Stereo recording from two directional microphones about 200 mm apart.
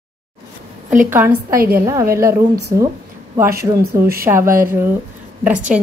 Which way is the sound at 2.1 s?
15° right (ahead or behind).